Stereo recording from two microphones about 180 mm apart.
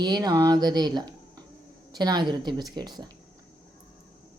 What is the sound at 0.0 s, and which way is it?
Speech, 20° right (ahead or behind).